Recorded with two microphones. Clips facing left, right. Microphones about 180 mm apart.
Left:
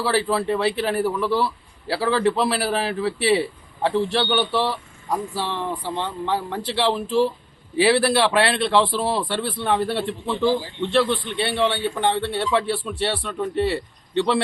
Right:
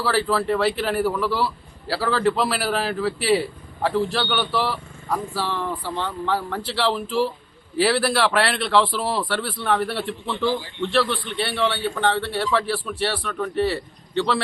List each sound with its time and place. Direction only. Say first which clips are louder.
0.0 s a man's voice: even; 20° left (ahead or behind)